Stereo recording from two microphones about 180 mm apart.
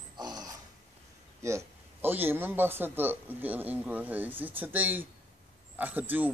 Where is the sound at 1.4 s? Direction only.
15° right (ahead or behind).